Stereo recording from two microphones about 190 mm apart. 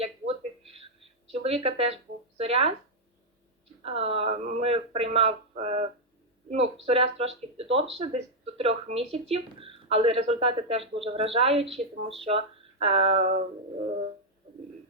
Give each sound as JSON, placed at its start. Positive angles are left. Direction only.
{"t": 0.0, "sound": "a sound", "side_deg": -30}
{"t": 1.3, "sound": "a woman's voice", "side_deg": -30}
{"t": 3.8, "sound": "speech", "side_deg": -30}